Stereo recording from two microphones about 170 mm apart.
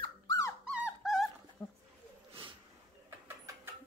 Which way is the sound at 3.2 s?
15° right (ahead or behind).